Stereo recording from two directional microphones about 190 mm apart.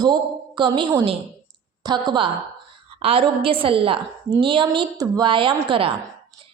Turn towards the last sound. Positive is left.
turn(degrees=-25)  # may be behind; listen again after turning